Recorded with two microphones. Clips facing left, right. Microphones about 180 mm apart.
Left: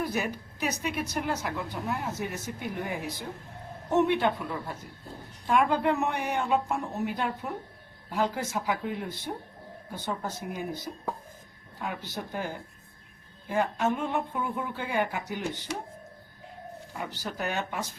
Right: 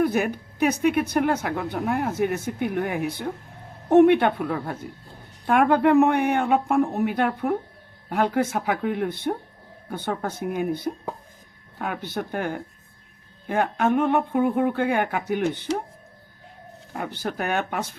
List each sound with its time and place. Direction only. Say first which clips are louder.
0.0 s speech: right 8 dB; 55° right (ahead or behind)
16.9 s speech: right 7 dB; 55° right (ahead or behind)